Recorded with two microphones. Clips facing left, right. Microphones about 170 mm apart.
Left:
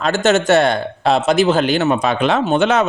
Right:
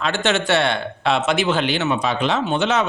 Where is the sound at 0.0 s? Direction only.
45° left (ahead or behind).